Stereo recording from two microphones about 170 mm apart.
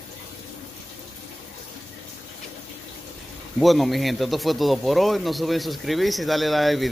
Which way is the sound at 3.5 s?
Centre (ahead or behind).